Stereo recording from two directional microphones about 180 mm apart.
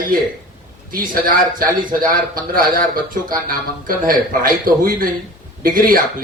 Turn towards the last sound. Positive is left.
turn(degrees=-55)  # may be behind; listen again after turning